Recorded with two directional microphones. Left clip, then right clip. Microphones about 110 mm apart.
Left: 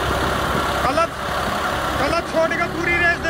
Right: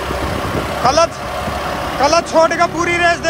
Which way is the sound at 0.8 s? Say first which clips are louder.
Right 9 dB; 25° right (ahead or behind).